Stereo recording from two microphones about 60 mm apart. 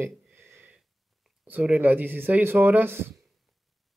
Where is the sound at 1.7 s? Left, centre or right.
Right.